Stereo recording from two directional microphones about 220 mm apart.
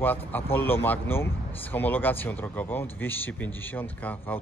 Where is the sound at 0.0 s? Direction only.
10° left (ahead or behind).